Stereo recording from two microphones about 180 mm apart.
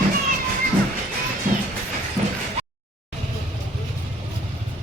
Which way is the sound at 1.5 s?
45° right (ahead or behind).